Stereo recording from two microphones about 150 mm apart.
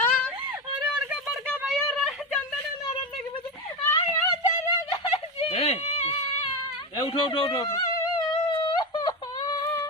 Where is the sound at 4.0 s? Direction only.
40° left (ahead or behind).